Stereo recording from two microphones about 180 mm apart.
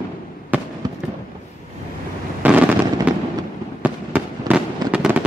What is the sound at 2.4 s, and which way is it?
Fireworks, 10° right (ahead or behind).